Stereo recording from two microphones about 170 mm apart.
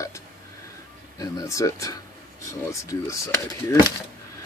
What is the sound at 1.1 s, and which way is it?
Speech, 20° left (ahead or behind).